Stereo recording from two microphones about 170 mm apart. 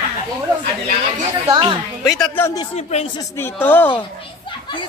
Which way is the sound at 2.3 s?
15° left (ahead or behind).